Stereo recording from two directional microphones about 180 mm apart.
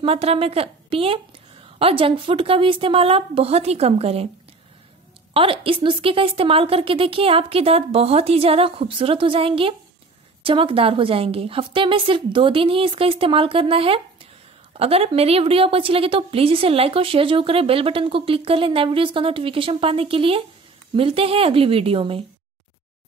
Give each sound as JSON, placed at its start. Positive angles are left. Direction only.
{"t": 0.0, "sound": "a woman's voice", "side_deg": -30}
{"t": 5.3, "sound": "a woman's voice", "side_deg": -30}